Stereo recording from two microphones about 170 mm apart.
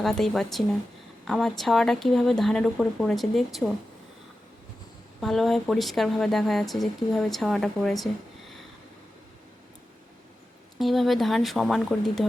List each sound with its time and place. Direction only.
0.0 s speech: centre (ahead or behind)
5.2 s speech: centre (ahead or behind)
10.8 s speech: centre (ahead or behind)